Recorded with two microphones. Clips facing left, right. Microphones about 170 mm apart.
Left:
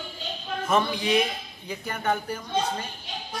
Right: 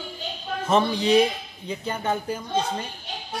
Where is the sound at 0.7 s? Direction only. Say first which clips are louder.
Right 4 dB; 30° right (ahead or behind).